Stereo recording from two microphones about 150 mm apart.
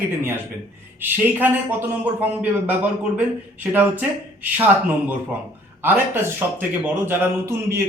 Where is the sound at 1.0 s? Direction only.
10° right (ahead or behind).